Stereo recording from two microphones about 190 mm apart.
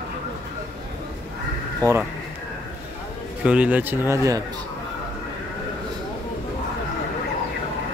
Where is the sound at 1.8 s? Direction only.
10° left (ahead or behind).